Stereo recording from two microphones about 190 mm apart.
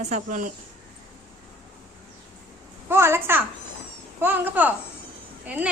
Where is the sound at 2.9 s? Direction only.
15° right (ahead or behind).